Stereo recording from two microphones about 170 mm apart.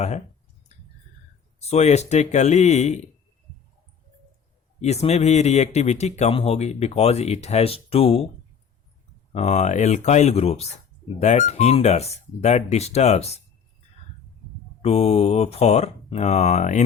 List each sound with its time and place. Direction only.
1.5 s speech: 40° left (ahead or behind)
4.8 s speech: 40° left (ahead or behind)
9.3 s speech: 40° left (ahead or behind)
14.8 s speech: 40° left (ahead or behind)